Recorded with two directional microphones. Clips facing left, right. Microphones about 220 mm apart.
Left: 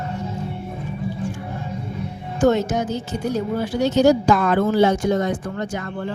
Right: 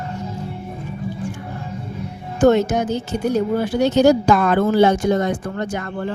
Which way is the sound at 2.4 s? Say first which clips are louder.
Right 3 dB; 65° right (ahead or behind).